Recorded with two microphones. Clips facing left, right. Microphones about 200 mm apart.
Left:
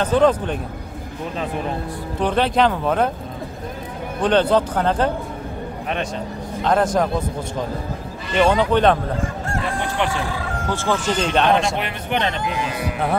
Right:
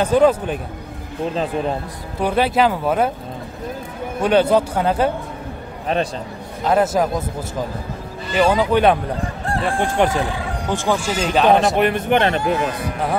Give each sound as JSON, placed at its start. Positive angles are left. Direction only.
{"t": 0.0, "sound": "speech", "side_deg": -10}
{"t": 2.1, "sound": "speech", "side_deg": -10}
{"t": 4.2, "sound": "speech", "side_deg": -10}
{"t": 6.6, "sound": "speech", "side_deg": -5}
{"t": 8.3, "sound": "a man's voice", "side_deg": -5}
{"t": 9.8, "sound": "speech", "side_deg": -45}
{"t": 10.7, "sound": "a man's voice", "side_deg": -15}
{"t": 11.7, "sound": "speech", "side_deg": -50}